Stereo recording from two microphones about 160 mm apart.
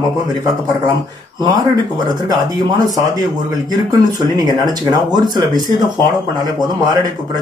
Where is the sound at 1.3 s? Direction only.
25° right (ahead or behind).